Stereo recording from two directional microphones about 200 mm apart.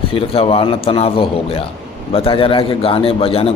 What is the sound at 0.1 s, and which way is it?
A man's voice, 30° left (ahead or behind).